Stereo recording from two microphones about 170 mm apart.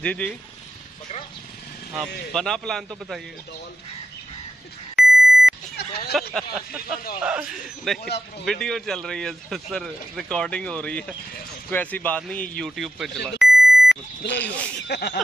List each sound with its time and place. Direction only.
0.0 s speech: 5° left (ahead or behind)
2.3 s speech: 5° left (ahead or behind)
4.9 s beep: centre (ahead or behind)
6.3 s speech: centre (ahead or behind)
14.9 s speech: 70° left (ahead or behind)